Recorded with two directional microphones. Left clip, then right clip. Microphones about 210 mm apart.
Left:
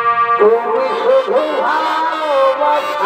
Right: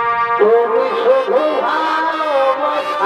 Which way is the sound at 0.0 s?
40° left (ahead or behind).